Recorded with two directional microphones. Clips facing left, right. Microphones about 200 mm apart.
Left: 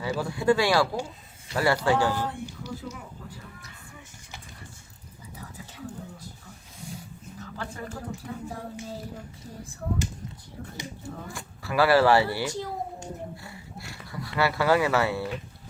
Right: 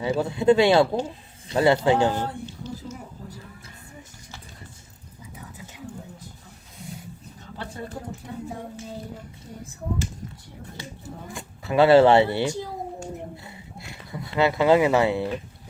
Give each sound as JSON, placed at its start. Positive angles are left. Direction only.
{"t": 0.0, "sound": "speech", "side_deg": -25}
{"t": 7.6, "sound": "speech", "side_deg": -25}
{"t": 11.3, "sound": "speech", "side_deg": -20}